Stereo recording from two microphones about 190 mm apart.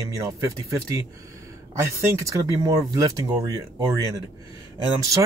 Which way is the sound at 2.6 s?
20° right (ahead or behind).